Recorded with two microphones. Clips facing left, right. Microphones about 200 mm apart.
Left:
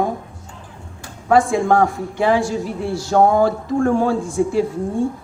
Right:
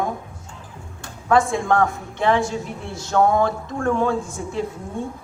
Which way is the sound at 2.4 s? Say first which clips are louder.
Left 4 dB; 30° left (ahead or behind).